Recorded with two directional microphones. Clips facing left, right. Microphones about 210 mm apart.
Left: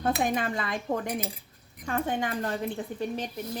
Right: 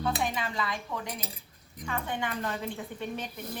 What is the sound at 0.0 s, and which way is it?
A woman's voice, 50° left (ahead or behind).